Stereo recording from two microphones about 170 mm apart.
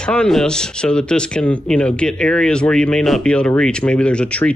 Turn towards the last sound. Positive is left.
turn(degrees=5)  # may be behind; listen again after turning